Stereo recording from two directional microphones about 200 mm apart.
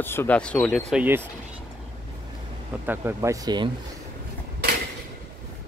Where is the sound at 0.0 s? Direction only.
10° left (ahead or behind).